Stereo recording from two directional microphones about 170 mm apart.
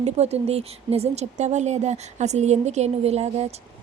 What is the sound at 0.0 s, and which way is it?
A woman's voice, 40° right (ahead or behind).